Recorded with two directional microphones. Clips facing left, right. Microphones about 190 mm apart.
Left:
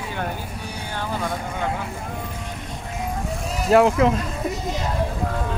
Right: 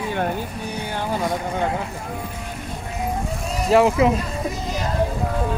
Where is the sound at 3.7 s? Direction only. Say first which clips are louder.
Even; centre (ahead or behind).